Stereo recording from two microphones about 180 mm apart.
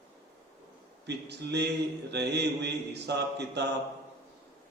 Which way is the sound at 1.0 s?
70° right (ahead or behind).